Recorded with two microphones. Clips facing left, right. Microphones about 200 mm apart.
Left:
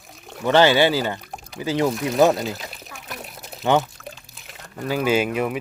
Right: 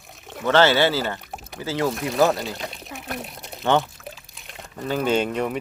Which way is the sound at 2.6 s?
Centre (ahead or behind).